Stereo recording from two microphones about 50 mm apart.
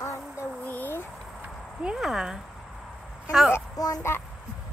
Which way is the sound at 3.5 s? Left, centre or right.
Left.